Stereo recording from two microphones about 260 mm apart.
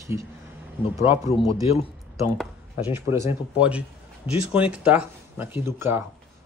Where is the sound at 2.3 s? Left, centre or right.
Centre.